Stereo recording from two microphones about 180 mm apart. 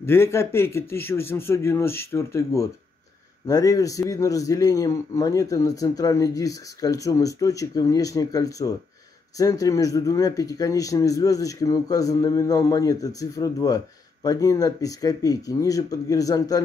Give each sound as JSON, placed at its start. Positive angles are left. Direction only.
{"t": 0.0, "sound": "a man's voice", "side_deg": 15}